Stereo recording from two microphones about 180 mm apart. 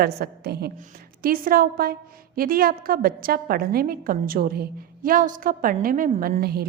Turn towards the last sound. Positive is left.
turn(degrees=-60)  # may be behind; listen again after turning